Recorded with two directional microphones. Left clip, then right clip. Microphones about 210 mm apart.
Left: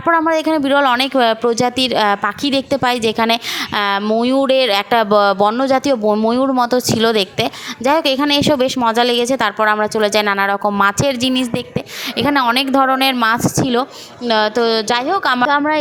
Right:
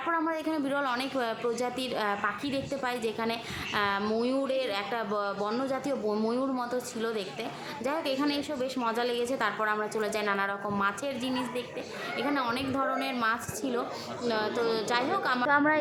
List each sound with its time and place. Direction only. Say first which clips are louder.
0.1 s speech: left 17 dB; 45° left (ahead or behind)